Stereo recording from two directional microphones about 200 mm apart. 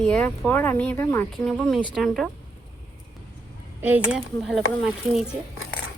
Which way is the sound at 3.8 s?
10° right (ahead or behind).